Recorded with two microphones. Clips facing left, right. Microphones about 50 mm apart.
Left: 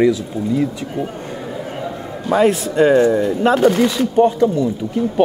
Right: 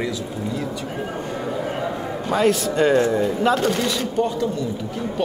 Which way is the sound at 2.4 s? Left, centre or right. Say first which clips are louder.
Left 4 dB; left.